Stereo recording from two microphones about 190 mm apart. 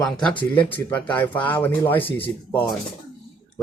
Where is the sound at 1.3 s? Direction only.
25° left (ahead or behind).